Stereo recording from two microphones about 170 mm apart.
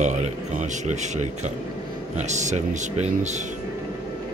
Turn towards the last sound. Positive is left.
turn(degrees=-40)  # may be behind; listen again after turning